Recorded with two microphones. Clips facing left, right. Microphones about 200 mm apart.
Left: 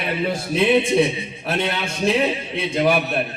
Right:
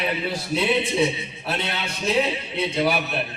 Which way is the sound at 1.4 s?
50° left (ahead or behind).